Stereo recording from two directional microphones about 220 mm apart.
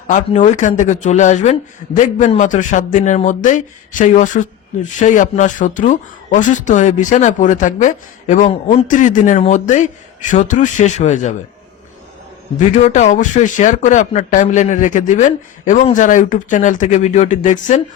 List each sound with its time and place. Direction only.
0.1 s speech: 35° left (ahead or behind)
12.5 s speech: 35° left (ahead or behind)